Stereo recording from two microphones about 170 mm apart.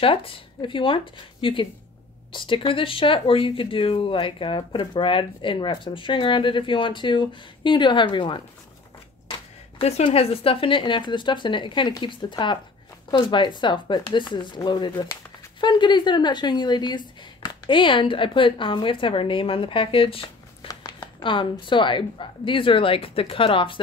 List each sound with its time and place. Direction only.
0.0 s speech: 30° left (ahead or behind)
20.6 s speech: 20° left (ahead or behind)